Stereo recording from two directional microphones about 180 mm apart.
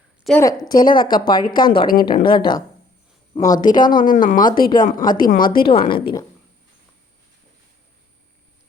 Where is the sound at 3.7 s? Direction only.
50° left (ahead or behind).